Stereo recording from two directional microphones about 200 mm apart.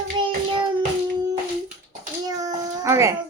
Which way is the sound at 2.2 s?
15° right (ahead or behind).